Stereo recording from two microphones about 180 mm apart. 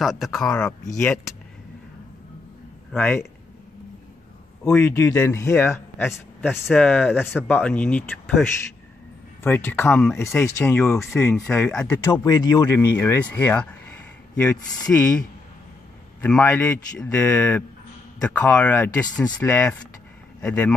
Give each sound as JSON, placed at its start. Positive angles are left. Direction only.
{"t": 0.0, "sound": "speech", "side_deg": 0}
{"t": 0.8, "sound": "speech", "side_deg": 15}
{"t": 2.9, "sound": "speech", "side_deg": 10}
{"t": 4.6, "sound": "speech", "side_deg": 15}
{"t": 12.3, "sound": "speech", "side_deg": 25}
{"t": 12.7, "sound": "speech", "side_deg": 10}
{"t": 16.2, "sound": "speech", "side_deg": 5}